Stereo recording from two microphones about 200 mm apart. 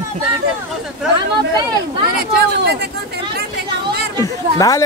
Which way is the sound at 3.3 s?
50° right (ahead or behind).